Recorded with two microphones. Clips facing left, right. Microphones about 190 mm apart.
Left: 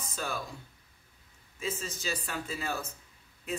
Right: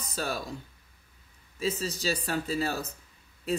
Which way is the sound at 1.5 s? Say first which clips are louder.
Right 6 dB; 35° right (ahead or behind).